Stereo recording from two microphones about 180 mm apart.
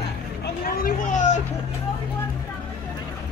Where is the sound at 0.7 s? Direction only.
50° left (ahead or behind).